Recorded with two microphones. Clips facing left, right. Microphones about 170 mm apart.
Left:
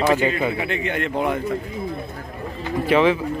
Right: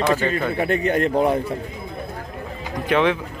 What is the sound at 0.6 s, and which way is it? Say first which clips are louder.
Speech: right 5 dB; 40° right (ahead or behind).